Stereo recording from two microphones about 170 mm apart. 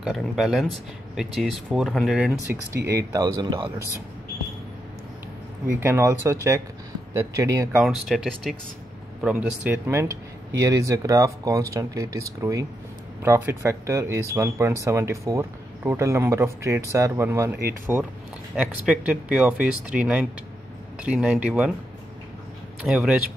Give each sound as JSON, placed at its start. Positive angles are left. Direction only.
{"t": 0.0, "sound": "speech", "side_deg": 0}
{"t": 2.5, "sound": "speech", "side_deg": -15}
{"t": 5.8, "sound": "speech", "side_deg": -15}
{"t": 7.8, "sound": "speech", "side_deg": 0}
{"t": 22.8, "sound": "speech", "side_deg": -5}